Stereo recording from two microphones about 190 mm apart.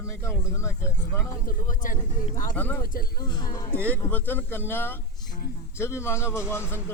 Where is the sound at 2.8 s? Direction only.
50° left (ahead or behind).